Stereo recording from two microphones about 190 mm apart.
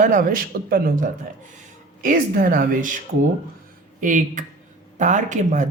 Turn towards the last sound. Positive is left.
turn(degrees=-40)  # may be behind; listen again after turning